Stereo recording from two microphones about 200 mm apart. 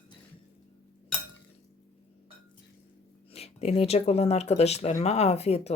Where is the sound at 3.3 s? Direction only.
30° left (ahead or behind).